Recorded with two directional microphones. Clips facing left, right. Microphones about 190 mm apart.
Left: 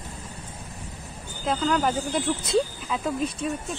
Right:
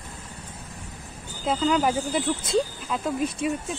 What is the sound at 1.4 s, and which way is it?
Speech, 10° right (ahead or behind).